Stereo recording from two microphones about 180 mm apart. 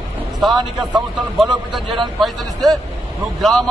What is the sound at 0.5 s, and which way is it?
Speech, 25° right (ahead or behind).